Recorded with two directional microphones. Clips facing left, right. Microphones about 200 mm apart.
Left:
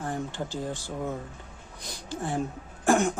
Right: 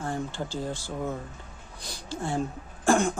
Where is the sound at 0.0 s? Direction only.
20° left (ahead or behind).